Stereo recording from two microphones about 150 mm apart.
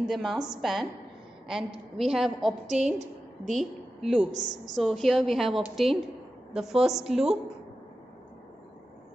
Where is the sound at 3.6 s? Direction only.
Centre (ahead or behind).